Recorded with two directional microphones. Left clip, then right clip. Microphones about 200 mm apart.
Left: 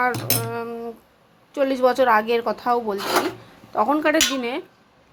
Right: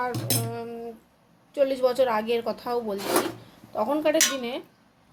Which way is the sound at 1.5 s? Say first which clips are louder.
Left 4 dB; 10° left (ahead or behind).